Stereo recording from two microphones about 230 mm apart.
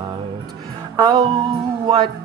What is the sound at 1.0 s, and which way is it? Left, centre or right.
Music, centre.